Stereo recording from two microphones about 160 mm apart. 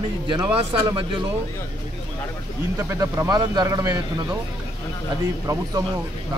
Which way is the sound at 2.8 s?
20° right (ahead or behind).